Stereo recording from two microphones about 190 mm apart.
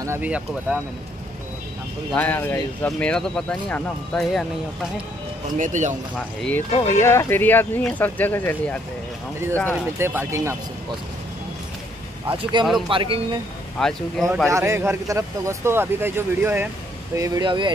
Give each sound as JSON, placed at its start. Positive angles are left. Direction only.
{"t": 0.0, "sound": "speech", "side_deg": -10}
{"t": 2.1, "sound": "speech", "side_deg": 10}
{"t": 5.6, "sound": "speech", "side_deg": -40}
{"t": 6.1, "sound": "speech", "side_deg": 5}
{"t": 9.8, "sound": "speech", "side_deg": -10}
{"t": 12.3, "sound": "speech", "side_deg": -25}
{"t": 13.7, "sound": "speech", "side_deg": 0}
{"t": 14.5, "sound": "speech", "side_deg": -15}